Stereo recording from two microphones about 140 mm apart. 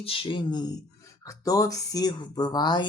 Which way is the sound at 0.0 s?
40° left (ahead or behind).